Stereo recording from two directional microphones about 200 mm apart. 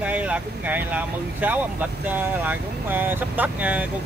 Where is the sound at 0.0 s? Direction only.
5° right (ahead or behind).